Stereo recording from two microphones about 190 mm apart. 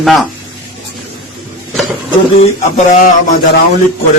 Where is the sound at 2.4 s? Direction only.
35° left (ahead or behind).